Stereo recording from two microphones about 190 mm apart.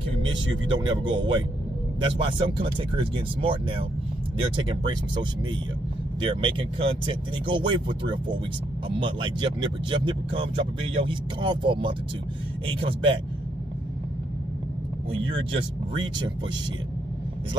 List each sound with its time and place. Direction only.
0.7 s speech: 25° right (ahead or behind)
6.2 s speech: 30° right (ahead or behind)
15.1 s speech: 30° right (ahead or behind)